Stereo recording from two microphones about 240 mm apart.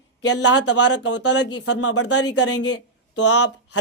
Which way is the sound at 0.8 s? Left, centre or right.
Left.